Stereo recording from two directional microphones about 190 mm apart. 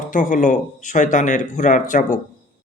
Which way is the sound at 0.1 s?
45° left (ahead or behind).